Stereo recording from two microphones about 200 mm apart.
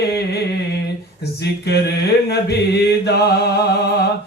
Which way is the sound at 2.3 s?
55° left (ahead or behind).